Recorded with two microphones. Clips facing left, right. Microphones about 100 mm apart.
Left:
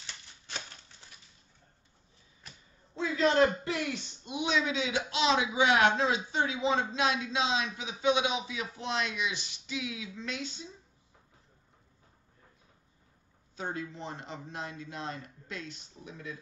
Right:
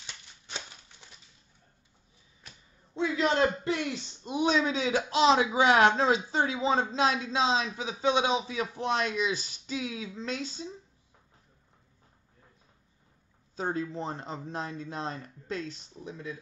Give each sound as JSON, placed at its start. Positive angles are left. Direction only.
{"t": 0.0, "sound": "a sound", "side_deg": -15}
{"t": 3.0, "sound": "a man's voice", "side_deg": -20}
{"t": 4.2, "sound": "speech", "side_deg": -40}
{"t": 13.6, "sound": "speech", "side_deg": -35}